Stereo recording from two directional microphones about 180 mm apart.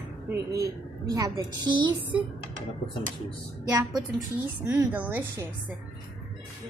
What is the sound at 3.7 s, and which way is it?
Speech, 20° right (ahead or behind).